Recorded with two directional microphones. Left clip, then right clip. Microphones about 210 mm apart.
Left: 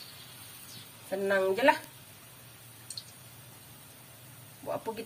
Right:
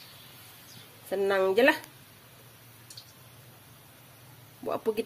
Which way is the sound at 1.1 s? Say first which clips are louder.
Right 2 dB; 50° right (ahead or behind).